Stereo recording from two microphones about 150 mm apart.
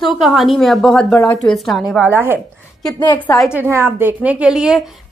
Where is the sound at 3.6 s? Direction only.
15° right (ahead or behind).